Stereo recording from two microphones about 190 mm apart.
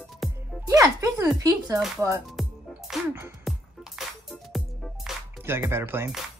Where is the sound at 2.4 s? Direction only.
Centre (ahead or behind).